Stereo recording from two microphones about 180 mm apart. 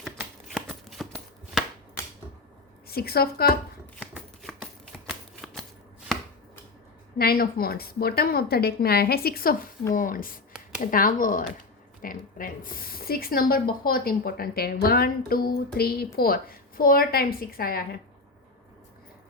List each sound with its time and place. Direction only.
0.0 s a sound: centre (ahead or behind)
2.8 s speech: 60° left (ahead or behind)
4.9 s shuffling cards: centre (ahead or behind)
6.1 s chopping: centre (ahead or behind)
7.2 s speech: 55° left (ahead or behind)